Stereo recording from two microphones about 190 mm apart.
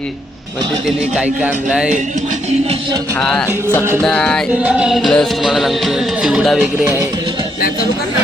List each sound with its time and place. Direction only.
1.1 s music: 5° right (ahead or behind)
3.2 s music: 5° left (ahead or behind)
6.8 s music: 15° right (ahead or behind)